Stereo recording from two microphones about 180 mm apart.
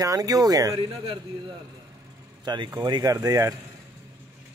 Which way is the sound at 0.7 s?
30° right (ahead or behind).